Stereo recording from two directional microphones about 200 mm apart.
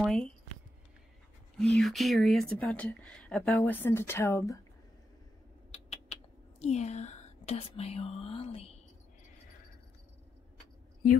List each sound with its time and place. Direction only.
0.0 s speech: centre (ahead or behind)
1.8 s speech: centre (ahead or behind)
5.7 s a sound: 30° left (ahead or behind)
6.6 s speech: 35° left (ahead or behind)